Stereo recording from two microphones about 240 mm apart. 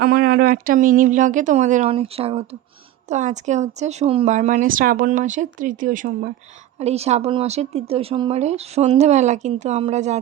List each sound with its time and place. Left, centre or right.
0.0 s speech: right